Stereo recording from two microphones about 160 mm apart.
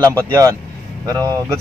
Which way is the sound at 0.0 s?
20° right (ahead or behind).